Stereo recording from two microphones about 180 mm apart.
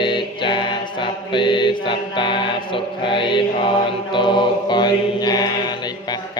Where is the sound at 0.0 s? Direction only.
25° left (ahead or behind).